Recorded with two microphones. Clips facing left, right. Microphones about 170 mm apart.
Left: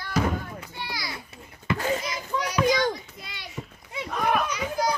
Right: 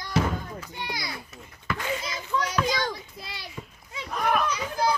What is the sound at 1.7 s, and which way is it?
Speech, 40° left (ahead or behind).